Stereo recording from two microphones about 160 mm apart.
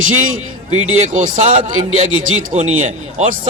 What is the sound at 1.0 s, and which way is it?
Speech, 45° right (ahead or behind).